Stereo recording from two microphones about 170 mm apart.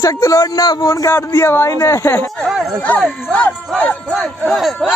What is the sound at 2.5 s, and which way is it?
Speech, 5° right (ahead or behind).